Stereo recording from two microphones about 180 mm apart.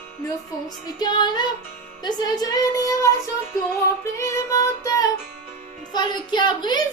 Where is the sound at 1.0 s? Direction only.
25° left (ahead or behind).